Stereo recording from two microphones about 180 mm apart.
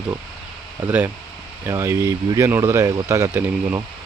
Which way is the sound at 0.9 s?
10° right (ahead or behind).